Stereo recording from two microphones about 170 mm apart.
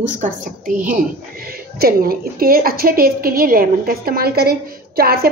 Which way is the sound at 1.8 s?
60° right (ahead or behind).